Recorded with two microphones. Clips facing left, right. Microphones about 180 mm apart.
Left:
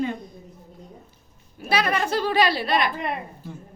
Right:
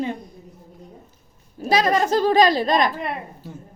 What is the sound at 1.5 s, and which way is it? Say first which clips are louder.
A child's voice: right 5 dB; 35° right (ahead or behind).